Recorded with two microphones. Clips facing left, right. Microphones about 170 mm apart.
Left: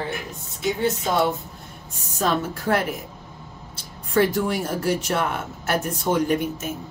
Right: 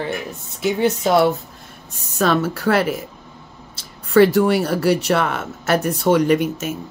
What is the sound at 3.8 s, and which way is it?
Speech, 80° right.